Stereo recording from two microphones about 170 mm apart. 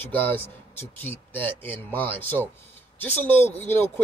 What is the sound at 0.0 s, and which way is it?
Speech, 10° left (ahead or behind).